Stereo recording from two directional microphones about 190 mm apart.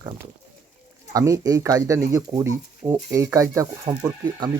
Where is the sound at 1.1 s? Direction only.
15° right (ahead or behind).